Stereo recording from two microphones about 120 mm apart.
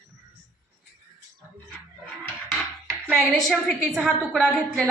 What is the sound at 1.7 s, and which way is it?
Music, 15° left (ahead or behind).